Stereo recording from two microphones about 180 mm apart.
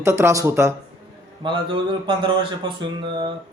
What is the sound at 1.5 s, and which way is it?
Speech, 25° right (ahead or behind).